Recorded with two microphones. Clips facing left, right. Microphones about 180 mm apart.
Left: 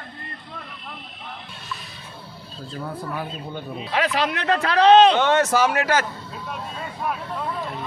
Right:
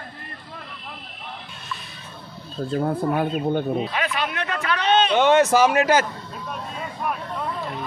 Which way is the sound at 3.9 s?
80° left.